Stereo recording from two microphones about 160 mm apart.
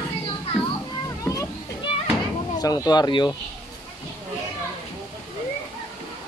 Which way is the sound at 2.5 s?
25° left (ahead or behind).